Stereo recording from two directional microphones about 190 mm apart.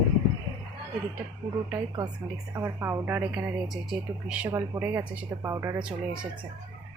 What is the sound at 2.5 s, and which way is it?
Speech, 15° right (ahead or behind).